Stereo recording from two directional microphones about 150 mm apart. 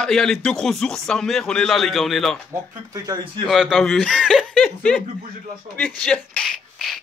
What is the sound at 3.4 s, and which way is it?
A man's voice, centre (ahead or behind).